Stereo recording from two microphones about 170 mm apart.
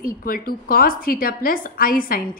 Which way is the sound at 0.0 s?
55° left (ahead or behind).